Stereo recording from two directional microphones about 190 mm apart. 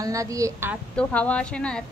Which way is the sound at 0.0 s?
15° right (ahead or behind).